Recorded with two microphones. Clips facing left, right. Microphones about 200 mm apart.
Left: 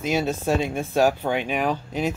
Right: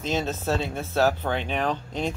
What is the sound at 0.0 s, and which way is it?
Speech, 10° left (ahead or behind).